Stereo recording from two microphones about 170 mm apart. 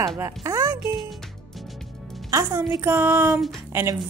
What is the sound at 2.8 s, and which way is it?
Music, 15° right (ahead or behind).